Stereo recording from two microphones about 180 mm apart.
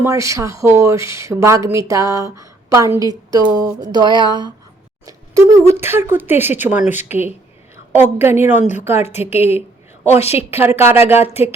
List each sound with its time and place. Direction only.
0.0 s a woman's voice: 15° right (ahead or behind)